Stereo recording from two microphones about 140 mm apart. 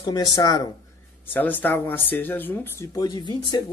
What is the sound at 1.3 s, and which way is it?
Speech, 15° left (ahead or behind).